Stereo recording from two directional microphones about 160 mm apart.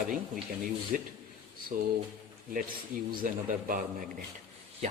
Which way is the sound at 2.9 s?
60° right (ahead or behind).